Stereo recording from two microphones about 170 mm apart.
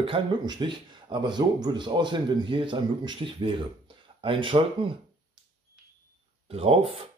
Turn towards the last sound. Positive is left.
turn(degrees=-35)  # may be behind; listen again after turning